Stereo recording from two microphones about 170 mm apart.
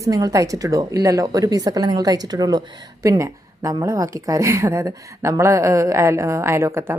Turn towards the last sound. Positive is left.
turn(degrees=-15)  # may be behind; listen again after turning